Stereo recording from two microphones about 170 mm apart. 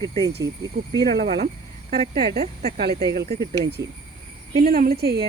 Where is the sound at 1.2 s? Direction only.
65° right (ahead or behind).